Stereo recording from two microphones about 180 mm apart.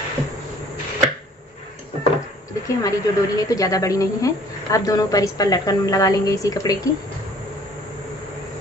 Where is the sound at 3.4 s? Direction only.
20° left (ahead or behind).